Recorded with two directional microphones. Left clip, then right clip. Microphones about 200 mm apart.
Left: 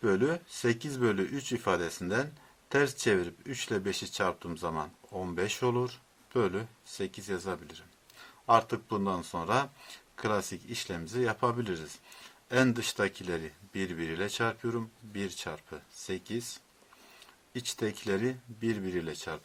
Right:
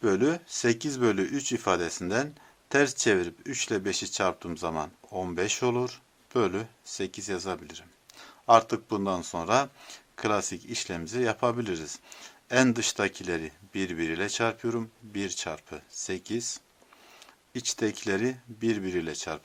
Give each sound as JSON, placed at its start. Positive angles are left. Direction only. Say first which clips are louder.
{"t": 0.0, "sound": "speech", "louder": "right 3 dB", "side_deg": -25}
{"t": 17.5, "sound": "speech", "louder": "right 5 dB", "side_deg": -30}